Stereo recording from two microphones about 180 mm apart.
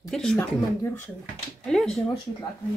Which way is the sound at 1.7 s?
Centre (ahead or behind).